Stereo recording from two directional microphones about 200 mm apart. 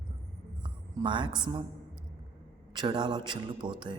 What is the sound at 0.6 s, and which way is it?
A woman's voice, 25° right (ahead or behind).